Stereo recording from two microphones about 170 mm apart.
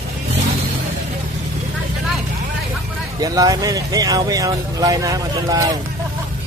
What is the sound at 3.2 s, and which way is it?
Speech, 20° right (ahead or behind).